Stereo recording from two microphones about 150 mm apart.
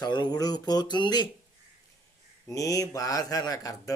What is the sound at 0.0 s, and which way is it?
Speech, 30° left (ahead or behind).